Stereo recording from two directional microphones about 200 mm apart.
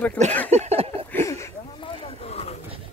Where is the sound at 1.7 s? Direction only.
25° left (ahead or behind).